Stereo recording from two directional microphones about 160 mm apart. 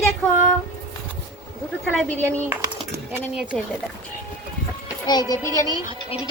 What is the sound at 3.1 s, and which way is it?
Speech, 5° right (ahead or behind).